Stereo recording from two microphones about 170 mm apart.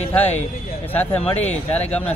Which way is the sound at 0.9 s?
10° left (ahead or behind).